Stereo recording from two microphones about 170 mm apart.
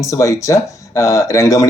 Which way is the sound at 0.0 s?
20° left (ahead or behind).